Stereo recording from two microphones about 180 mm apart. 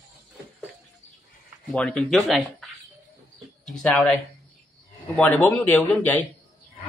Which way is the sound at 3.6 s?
5° left (ahead or behind).